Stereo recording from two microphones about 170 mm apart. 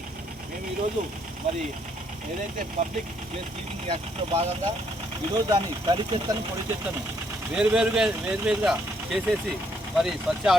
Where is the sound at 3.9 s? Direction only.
35° right (ahead or behind).